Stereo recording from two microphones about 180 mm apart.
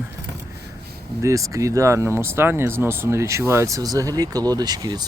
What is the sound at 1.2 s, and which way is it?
Speech, 15° right (ahead or behind).